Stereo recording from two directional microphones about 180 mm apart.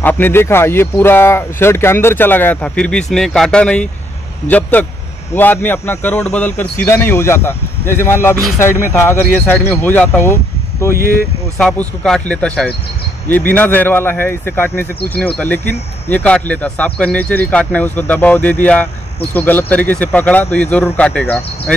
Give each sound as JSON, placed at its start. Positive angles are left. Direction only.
{"t": 0.0, "sound": "speech", "side_deg": 10}